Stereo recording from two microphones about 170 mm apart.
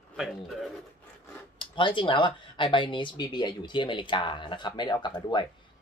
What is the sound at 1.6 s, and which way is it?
Speech, 30° left (ahead or behind).